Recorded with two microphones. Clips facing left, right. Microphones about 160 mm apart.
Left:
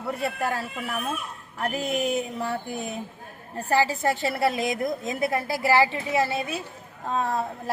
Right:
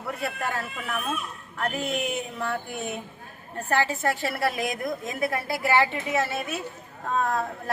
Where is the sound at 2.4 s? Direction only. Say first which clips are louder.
Left 1 dB; 35° left (ahead or behind).